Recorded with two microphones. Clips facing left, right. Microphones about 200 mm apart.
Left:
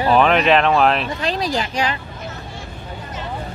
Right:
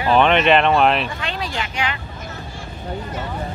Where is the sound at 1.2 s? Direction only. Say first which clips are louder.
Left 5 dB; 35° left (ahead or behind).